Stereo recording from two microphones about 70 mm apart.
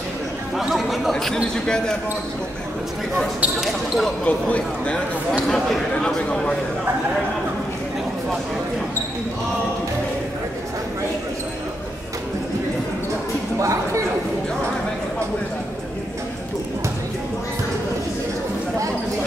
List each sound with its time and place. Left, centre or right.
0.6 s speech: centre
1.1 s speech: centre
3.6 s speech: centre
4.2 s speech: centre
13.6 s speech: right